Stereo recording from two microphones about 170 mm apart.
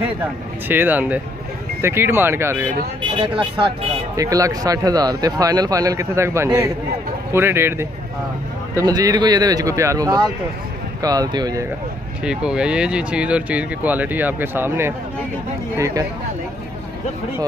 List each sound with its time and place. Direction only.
0.2 s speech: 10° right (ahead or behind)
3.0 s speech: 30° right (ahead or behind)
4.2 s a man's voice: 20° right (ahead or behind)
12.3 s a man's voice: 5° right (ahead or behind)